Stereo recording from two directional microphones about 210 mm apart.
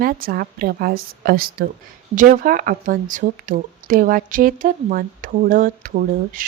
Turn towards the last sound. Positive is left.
turn(degrees=-40)  # may be behind; listen again after turning